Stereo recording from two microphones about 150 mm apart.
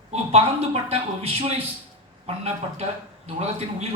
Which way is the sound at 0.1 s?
40° right (ahead or behind).